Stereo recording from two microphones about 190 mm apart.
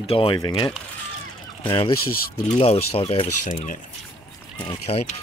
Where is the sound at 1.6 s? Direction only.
25° left (ahead or behind).